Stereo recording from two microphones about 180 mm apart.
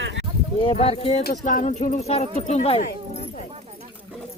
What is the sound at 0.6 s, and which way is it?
Speech, 30° left (ahead or behind).